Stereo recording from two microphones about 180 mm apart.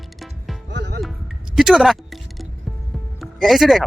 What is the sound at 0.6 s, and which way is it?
Music, 70° right (ahead or behind).